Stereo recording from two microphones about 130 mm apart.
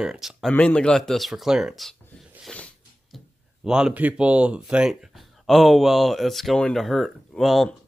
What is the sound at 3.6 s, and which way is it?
Speech, 5° right (ahead or behind).